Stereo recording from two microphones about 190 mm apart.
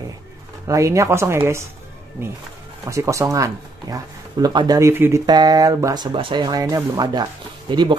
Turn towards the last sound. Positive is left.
turn(degrees=-25)  # may be behind; listen again after turning